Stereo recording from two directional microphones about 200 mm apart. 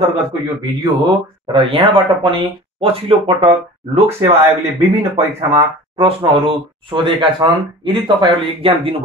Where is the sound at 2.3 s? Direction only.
25° right (ahead or behind).